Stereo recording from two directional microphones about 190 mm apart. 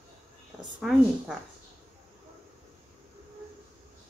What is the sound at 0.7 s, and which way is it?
Speech, 5° right (ahead or behind).